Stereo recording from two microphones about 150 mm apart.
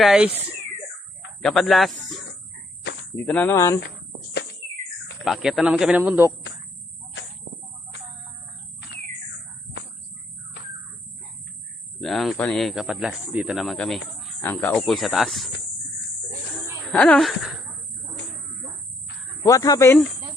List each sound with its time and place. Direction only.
0.0 s speech: 5° right (ahead or behind); by 3.8 s 20° left (ahead or behind)
5.2 s speech: centre (ahead or behind)
11.9 s speech: centre (ahead or behind)
16.9 s speech: 10° left (ahead or behind)
19.5 s speech: 25° left (ahead or behind)